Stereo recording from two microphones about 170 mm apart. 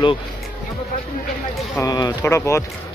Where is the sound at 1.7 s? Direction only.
20° left (ahead or behind).